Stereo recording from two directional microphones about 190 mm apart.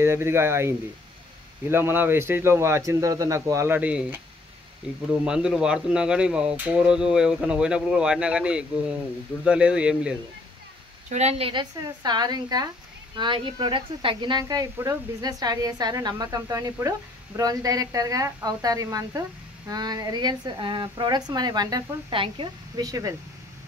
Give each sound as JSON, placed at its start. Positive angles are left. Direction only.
{"t": 0.0, "sound": "speech", "side_deg": -15}
{"t": 5.2, "sound": "speech", "side_deg": -5}
{"t": 11.1, "sound": "speech", "side_deg": -35}